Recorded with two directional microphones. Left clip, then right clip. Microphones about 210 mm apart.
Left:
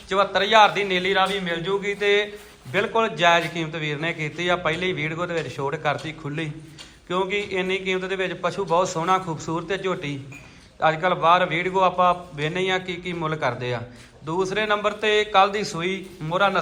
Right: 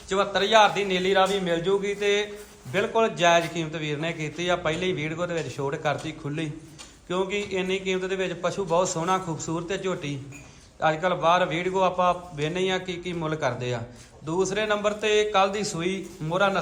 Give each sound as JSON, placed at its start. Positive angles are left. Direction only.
{"t": 0.1, "sound": "a man's voice", "side_deg": -20}
{"t": 7.3, "sound": "speech", "side_deg": -55}
{"t": 7.5, "sound": "a man's voice", "side_deg": -20}